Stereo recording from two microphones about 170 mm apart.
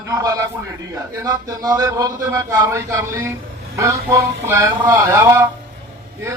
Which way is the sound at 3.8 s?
20° right (ahead or behind).